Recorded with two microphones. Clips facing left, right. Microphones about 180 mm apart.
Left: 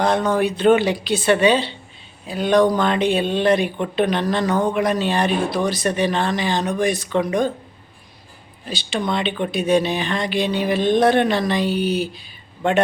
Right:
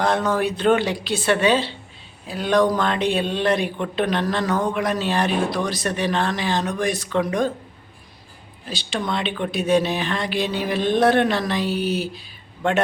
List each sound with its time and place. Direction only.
0.0 s speech: centre (ahead or behind)
8.7 s speech: centre (ahead or behind)